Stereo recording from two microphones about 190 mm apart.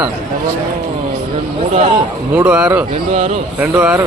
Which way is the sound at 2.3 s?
5° right (ahead or behind).